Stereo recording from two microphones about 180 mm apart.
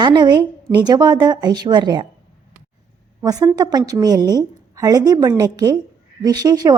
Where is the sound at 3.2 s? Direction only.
20° right (ahead or behind).